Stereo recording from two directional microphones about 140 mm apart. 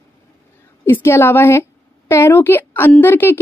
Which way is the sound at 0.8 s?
15° left (ahead or behind).